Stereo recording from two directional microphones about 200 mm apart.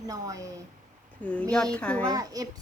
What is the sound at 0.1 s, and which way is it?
Speech, 15° right (ahead or behind).